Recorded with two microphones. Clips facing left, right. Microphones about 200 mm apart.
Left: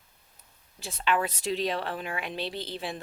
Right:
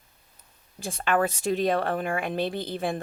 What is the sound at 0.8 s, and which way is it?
Speech, 50° right (ahead or behind).